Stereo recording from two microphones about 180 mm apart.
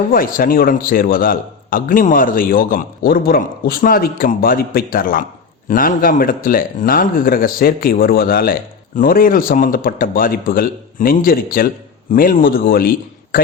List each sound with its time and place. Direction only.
0.1 s a man's voice: 50° left (ahead or behind)